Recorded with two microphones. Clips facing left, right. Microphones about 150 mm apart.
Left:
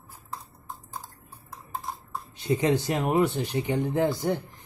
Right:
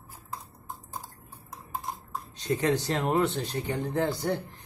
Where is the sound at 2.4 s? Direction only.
15° left (ahead or behind).